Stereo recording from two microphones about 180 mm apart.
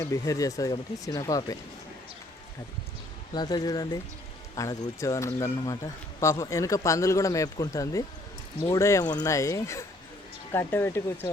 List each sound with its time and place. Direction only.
0.0 s speech: 20° left (ahead or behind)
3.3 s speech: 25° left (ahead or behind)